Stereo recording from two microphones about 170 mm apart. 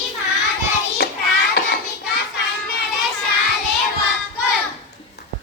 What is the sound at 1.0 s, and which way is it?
Hands, 70° left (ahead or behind).